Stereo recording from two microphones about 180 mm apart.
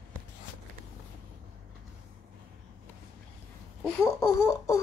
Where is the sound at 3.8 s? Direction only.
15° left (ahead or behind).